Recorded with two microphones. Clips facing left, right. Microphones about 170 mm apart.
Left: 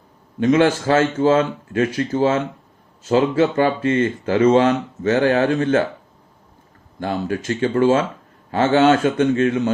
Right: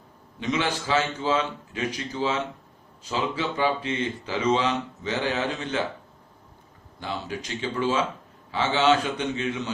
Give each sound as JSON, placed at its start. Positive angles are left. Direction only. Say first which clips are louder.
{"t": 0.3, "sound": "speech", "louder": "left 12 dB", "side_deg": 50}
{"t": 7.0, "sound": "speech", "louder": "left 9 dB", "side_deg": 50}